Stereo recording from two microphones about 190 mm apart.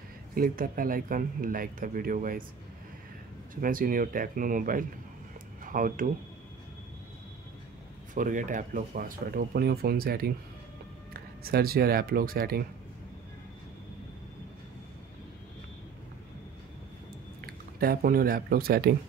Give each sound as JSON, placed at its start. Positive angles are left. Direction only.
{"t": 0.3, "sound": "speech", "side_deg": -50}
{"t": 3.6, "sound": "speech", "side_deg": -45}
{"t": 8.1, "sound": "speech", "side_deg": -40}
{"t": 17.4, "sound": "speech", "side_deg": -50}